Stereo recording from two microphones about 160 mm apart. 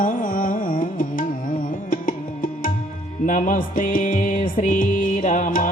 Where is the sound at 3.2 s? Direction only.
55° left (ahead or behind).